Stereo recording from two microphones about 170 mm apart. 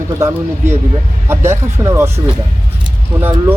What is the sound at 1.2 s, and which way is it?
Speech, 15° right (ahead or behind).